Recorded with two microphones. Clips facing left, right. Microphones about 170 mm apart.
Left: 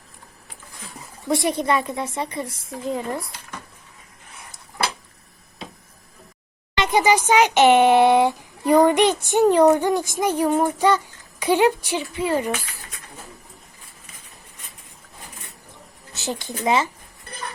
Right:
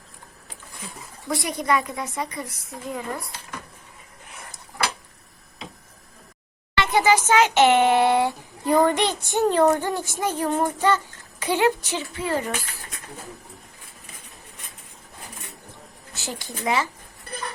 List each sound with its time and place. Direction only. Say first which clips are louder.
1.3 s a woman's voice: left 3 dB; 25° left (ahead or behind)
6.7 s speech: left 1 dB; 20° left (ahead or behind)
16.1 s a woman's voice: left 5 dB; 20° left (ahead or behind)